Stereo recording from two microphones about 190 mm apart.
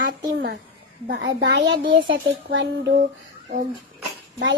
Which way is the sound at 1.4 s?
70° right (ahead or behind).